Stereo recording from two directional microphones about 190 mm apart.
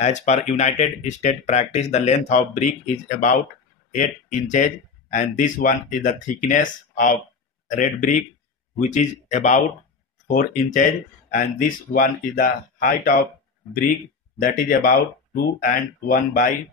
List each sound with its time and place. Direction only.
0.0 s speech: 40° left (ahead or behind)
3.9 s speech: 40° left (ahead or behind)
14.4 s speech: 50° left (ahead or behind)